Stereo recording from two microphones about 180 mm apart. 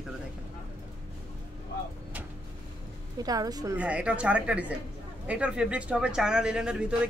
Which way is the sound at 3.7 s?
5° right (ahead or behind).